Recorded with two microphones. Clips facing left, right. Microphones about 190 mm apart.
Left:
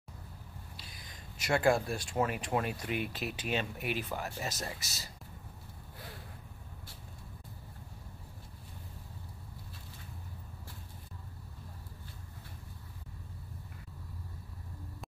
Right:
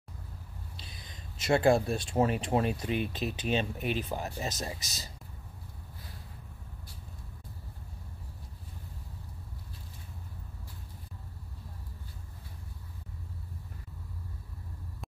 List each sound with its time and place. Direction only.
0.7 s speech: 25° right (ahead or behind)